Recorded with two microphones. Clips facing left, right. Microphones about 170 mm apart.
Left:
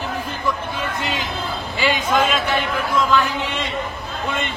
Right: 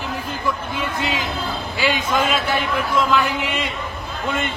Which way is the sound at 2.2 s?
10° right (ahead or behind).